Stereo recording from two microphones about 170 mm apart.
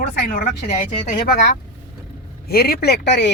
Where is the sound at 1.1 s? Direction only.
65° left (ahead or behind).